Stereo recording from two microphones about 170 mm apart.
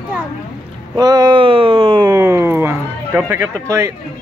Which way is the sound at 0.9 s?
25° right (ahead or behind).